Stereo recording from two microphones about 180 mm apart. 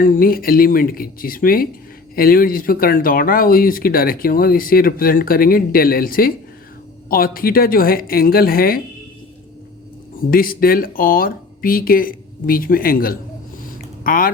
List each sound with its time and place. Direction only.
0.0 s a woman's voice: 50° left (ahead or behind)
10.2 s speech: 55° left (ahead or behind)